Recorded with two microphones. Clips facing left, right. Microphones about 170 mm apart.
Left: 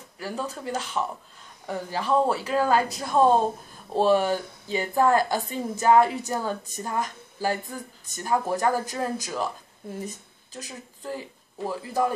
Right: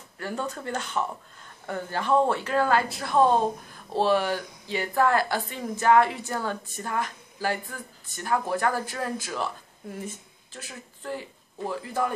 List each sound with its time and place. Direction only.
0.2 s a woman's voice: 5° left (ahead or behind)